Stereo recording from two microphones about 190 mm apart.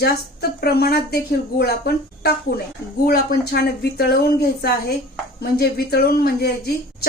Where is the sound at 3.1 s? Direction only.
55° left (ahead or behind).